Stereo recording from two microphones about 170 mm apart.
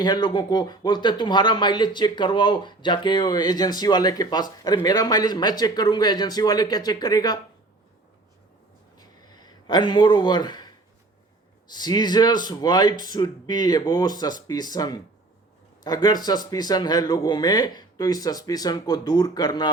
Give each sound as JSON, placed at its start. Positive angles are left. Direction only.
{"t": 0.0, "sound": "speech", "side_deg": 25}
{"t": 9.0, "sound": "a sound", "side_deg": 25}
{"t": 11.7, "sound": "speech", "side_deg": 25}